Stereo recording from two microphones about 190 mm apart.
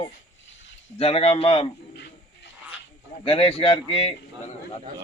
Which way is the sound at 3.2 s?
30° left (ahead or behind).